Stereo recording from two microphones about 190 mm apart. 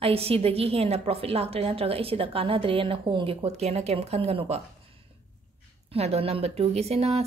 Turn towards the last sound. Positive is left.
turn(degrees=-35)  # may be behind; listen again after turning